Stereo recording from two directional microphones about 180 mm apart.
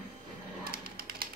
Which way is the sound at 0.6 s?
55° right (ahead or behind).